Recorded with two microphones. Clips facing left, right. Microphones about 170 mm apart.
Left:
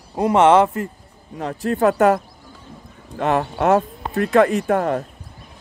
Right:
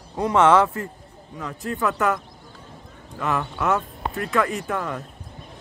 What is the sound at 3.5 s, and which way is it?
Speech, 35° left (ahead or behind).